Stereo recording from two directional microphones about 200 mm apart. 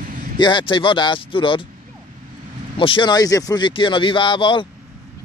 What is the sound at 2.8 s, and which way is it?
Speech, 25° left (ahead or behind).